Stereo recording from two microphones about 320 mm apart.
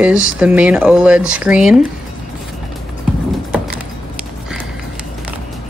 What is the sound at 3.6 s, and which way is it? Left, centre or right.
Keys jangling, right.